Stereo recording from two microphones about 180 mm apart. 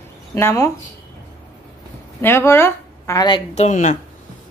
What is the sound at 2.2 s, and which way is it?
Speech, 15° left (ahead or behind).